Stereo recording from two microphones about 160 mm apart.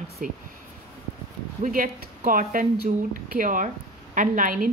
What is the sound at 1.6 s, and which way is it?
A woman's voice, 55° right (ahead or behind).